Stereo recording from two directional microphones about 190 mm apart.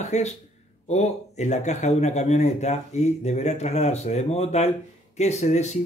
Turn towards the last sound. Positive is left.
turn(degrees=35)  # may be behind; listen again after turning